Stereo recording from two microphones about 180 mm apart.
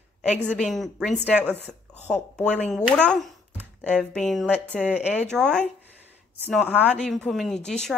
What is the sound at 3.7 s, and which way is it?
Speech, 5° left (ahead or behind).